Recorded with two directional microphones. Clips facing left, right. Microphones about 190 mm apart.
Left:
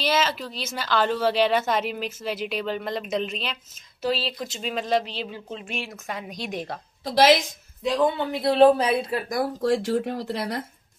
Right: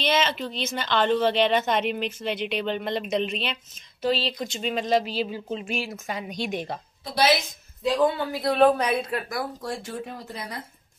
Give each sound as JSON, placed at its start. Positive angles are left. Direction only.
{"t": 0.0, "sound": "speech", "side_deg": 5}
{"t": 8.2, "sound": "speech", "side_deg": 25}
{"t": 9.3, "sound": "speech", "side_deg": 45}
{"t": 9.7, "sound": "speech", "side_deg": 80}